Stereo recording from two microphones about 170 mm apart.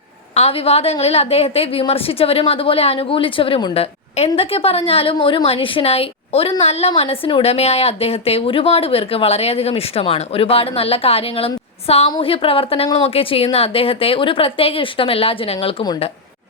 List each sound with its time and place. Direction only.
0.3 s a woman's voice: 35° left (ahead or behind)